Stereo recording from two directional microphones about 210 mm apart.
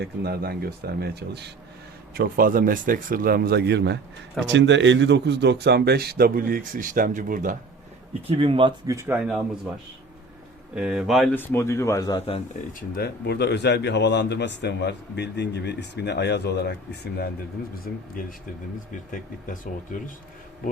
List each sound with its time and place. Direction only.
0.0 s speech: 50° right (ahead or behind)
8.3 s speech: 25° right (ahead or behind); by 9.7 s 5° right (ahead or behind)
10.8 s speech: centre (ahead or behind); by 12.4 s 25° left (ahead or behind)
12.9 s speech: 50° left (ahead or behind)